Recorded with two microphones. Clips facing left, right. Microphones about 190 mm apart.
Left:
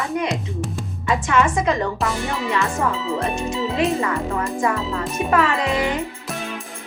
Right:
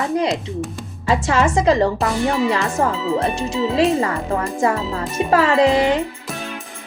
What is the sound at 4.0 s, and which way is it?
Speech, 35° right (ahead or behind).